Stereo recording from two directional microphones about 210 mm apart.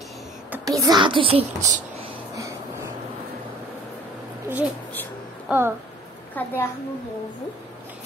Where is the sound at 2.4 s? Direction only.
15° right (ahead or behind).